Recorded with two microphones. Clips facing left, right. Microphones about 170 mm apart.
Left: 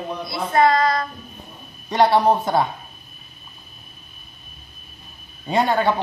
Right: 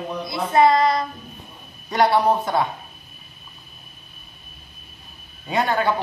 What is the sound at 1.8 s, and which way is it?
Speech, 25° left (ahead or behind).